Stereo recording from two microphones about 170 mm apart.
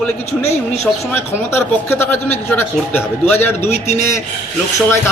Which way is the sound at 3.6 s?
40° left (ahead or behind).